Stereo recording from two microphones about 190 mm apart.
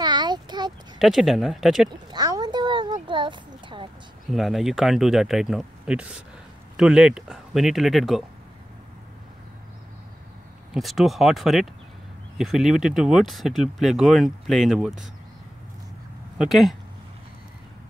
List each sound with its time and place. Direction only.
0.0 s a sound: 20° right (ahead or behind)
0.9 s speech: centre (ahead or behind)
2.0 s speech: 20° right (ahead or behind)
4.3 s speech: centre (ahead or behind)
10.7 s speech: centre (ahead or behind)
16.3 s speech: centre (ahead or behind)